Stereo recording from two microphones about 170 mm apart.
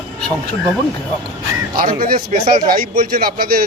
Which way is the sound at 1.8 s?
60° right (ahead or behind).